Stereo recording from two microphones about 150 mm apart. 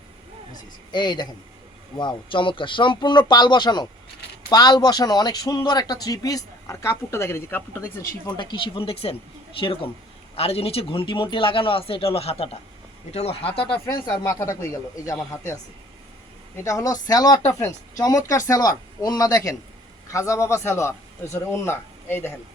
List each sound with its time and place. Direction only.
0.9 s speech: 30° left (ahead or behind)
8.4 s speech: 35° left (ahead or behind)
16.6 s speech: 20° left (ahead or behind)